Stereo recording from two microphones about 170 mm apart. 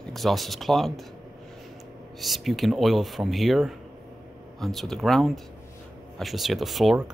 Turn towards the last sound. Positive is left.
turn(degrees=-5)  # may be behind; listen again after turning